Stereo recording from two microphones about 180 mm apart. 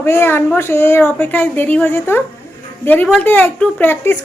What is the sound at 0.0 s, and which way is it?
Speech, 15° left (ahead or behind).